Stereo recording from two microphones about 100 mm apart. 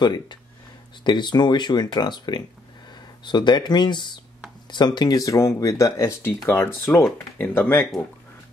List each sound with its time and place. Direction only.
0.0 s speech: 45° left (ahead or behind); by 7.8 s 20° left (ahead or behind)